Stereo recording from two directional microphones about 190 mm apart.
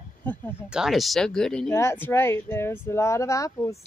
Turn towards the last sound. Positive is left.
turn(degrees=15)  # may be behind; listen again after turning